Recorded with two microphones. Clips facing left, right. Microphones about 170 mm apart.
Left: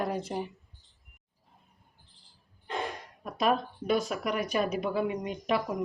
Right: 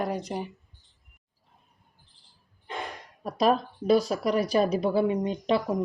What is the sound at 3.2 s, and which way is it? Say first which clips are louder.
A woman's voice: right 4 dB; 35° right (ahead or behind).